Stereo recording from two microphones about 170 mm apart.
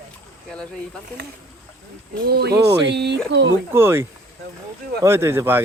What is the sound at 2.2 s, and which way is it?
Speech, 70° right (ahead or behind).